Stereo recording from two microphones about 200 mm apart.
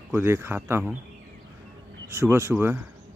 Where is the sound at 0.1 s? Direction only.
10° right (ahead or behind).